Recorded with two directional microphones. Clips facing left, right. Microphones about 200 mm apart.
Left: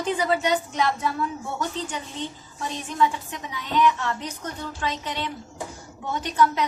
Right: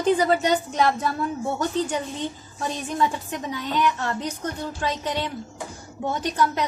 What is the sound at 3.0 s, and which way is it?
A woman's voice, 40° right (ahead or behind).